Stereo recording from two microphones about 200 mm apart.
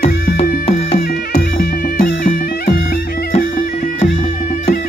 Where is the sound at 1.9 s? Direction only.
45° left (ahead or behind).